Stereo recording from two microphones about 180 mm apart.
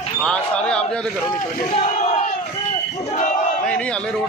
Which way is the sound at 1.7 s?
35° left (ahead or behind).